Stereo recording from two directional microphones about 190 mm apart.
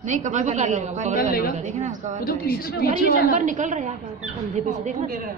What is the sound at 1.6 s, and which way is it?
Speech, 40° right (ahead or behind).